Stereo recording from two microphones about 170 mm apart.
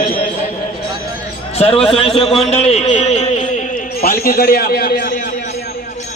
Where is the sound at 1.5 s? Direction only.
35° left (ahead or behind).